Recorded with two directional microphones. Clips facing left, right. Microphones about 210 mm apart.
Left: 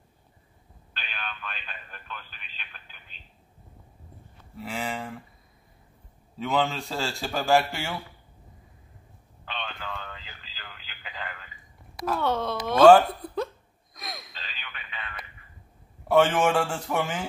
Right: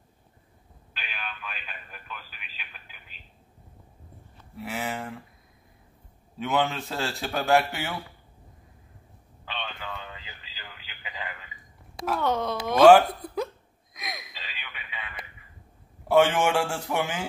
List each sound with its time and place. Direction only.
0.9 s speech: 5° right (ahead or behind)
4.6 s a man's voice: 5° right (ahead or behind)
6.4 s a man's voice: centre (ahead or behind)
9.4 s a sound: 5° right (ahead or behind)
12.1 s a man's voice: centre (ahead or behind)
13.9 s gasp: 20° right (ahead or behind)
14.2 s radio: 5° right (ahead or behind)
16.1 s speech: 10° right (ahead or behind)